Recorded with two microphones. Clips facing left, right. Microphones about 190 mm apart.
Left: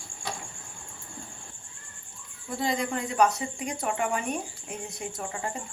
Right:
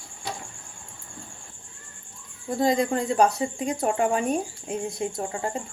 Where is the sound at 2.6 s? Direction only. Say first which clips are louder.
Right 6 dB; 40° right (ahead or behind).